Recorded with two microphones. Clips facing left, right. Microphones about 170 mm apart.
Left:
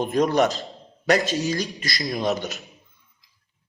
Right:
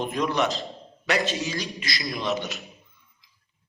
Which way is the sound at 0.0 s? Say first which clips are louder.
Left 5 dB; 45° left (ahead or behind).